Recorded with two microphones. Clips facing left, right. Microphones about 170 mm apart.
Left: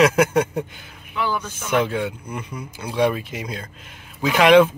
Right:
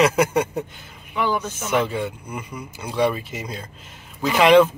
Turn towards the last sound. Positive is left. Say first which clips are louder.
# even
turn(degrees=0)  # may be behind; listen again after turning